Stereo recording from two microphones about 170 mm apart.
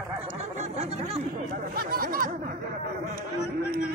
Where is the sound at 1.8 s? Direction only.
60° right (ahead or behind).